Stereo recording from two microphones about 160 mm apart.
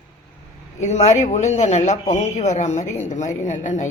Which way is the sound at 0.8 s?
45° left (ahead or behind).